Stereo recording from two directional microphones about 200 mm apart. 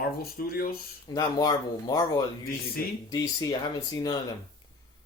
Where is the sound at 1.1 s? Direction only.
20° left (ahead or behind).